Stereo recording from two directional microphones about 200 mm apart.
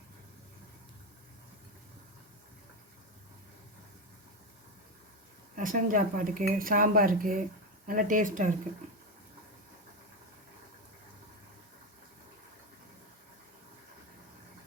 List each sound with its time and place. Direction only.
5.5 s speech: 40° right (ahead or behind)